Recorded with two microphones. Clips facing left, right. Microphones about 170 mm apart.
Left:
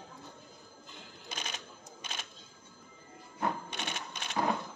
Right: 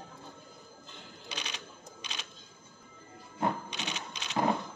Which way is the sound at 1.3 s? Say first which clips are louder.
Even; 45° left (ahead or behind).